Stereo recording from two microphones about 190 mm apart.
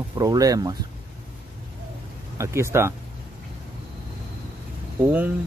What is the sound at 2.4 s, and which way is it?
Speech, 15° right (ahead or behind).